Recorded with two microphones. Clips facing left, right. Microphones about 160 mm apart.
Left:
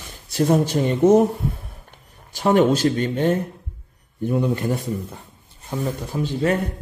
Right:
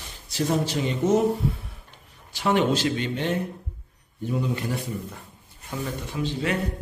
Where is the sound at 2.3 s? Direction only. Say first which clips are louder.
Left 5 dB; 45° left (ahead or behind).